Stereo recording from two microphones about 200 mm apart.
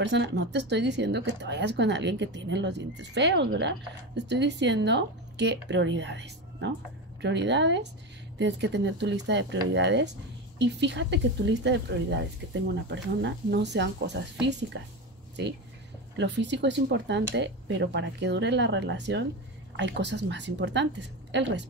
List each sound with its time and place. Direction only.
0.0 s speech: 60° right (ahead or behind)
16.2 s speech: 60° right (ahead or behind)